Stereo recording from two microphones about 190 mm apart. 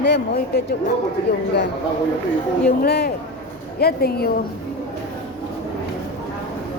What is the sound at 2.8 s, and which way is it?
A woman's voice, 55° left (ahead or behind).